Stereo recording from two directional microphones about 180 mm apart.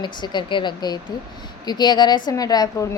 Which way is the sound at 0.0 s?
25° left (ahead or behind).